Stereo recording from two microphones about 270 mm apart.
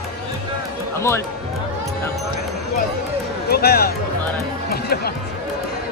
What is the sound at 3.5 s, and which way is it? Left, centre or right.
Speech, left.